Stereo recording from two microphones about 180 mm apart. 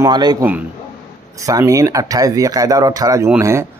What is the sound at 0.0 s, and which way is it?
Speech, 20° right (ahead or behind).